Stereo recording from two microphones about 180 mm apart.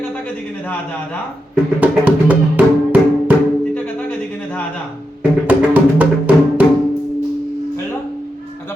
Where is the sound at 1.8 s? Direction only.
5° right (ahead or behind).